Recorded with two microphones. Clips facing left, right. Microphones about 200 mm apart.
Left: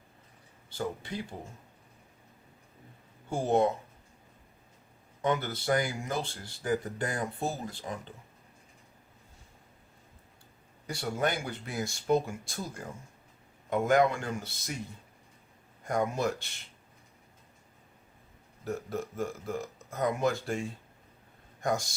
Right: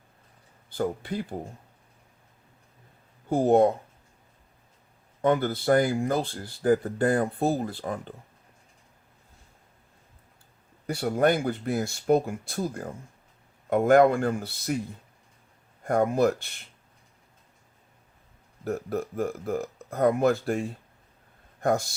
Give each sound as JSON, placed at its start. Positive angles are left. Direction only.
{"t": 0.8, "sound": "speech", "side_deg": -55}
{"t": 3.2, "sound": "speech", "side_deg": -55}
{"t": 5.2, "sound": "speech", "side_deg": -55}
{"t": 10.8, "sound": "speech", "side_deg": -60}
{"t": 15.8, "sound": "speech", "side_deg": -55}
{"t": 18.6, "sound": "speech", "side_deg": -60}